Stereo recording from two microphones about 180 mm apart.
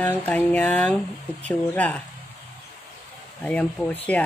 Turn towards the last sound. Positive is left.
turn(degrees=10)  # may be behind; listen again after turning